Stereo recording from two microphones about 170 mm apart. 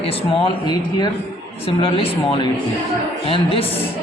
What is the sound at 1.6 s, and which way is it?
Speech, 35° left (ahead or behind).